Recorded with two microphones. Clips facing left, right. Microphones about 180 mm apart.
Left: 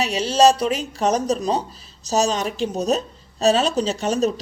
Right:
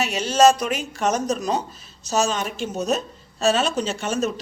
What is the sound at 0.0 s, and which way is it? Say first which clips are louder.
A woman's voice: left 1 dB; 35° left (ahead or behind).